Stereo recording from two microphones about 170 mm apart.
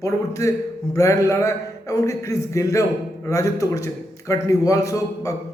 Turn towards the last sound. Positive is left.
turn(degrees=20)  # may be behind; listen again after turning